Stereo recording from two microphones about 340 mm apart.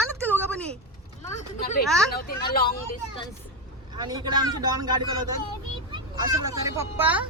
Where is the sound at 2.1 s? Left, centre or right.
Left.